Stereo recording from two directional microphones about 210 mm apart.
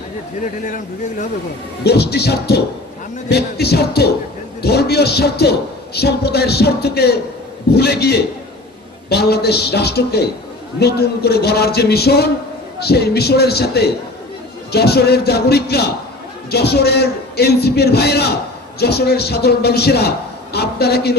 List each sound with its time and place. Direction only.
1.8 s a man's voice: 50° left (ahead or behind)